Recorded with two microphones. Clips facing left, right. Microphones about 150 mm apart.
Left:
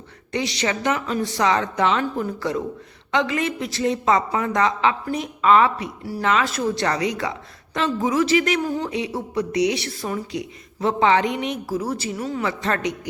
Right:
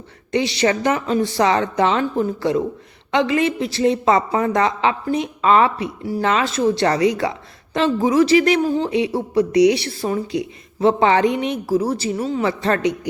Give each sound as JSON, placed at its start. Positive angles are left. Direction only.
{"t": 0.3, "sound": "a woman's voice", "side_deg": -30}